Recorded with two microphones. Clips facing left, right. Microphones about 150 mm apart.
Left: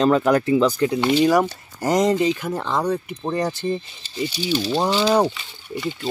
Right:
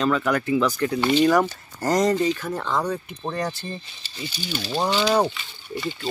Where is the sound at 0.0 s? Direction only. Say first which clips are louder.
Left 5 dB; 35° left (ahead or behind).